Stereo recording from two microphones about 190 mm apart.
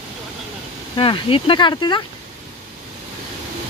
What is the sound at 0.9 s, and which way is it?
Speech, 25° left (ahead or behind).